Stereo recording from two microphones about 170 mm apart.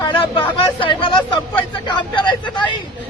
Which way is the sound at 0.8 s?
30° left (ahead or behind).